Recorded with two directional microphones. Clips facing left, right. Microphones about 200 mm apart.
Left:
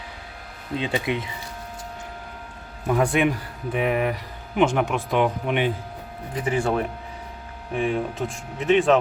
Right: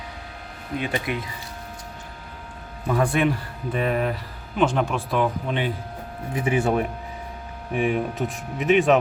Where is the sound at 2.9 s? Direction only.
15° left (ahead or behind).